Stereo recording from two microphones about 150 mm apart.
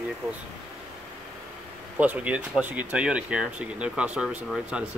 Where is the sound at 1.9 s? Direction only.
10° right (ahead or behind).